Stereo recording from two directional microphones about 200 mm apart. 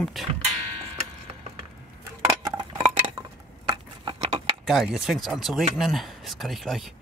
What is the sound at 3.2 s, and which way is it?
Glass, 15° right (ahead or behind).